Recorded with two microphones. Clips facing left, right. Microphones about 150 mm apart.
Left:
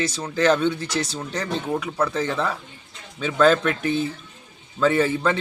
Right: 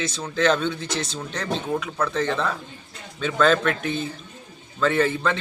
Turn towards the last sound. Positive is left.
turn(degrees=10)  # may be behind; listen again after turning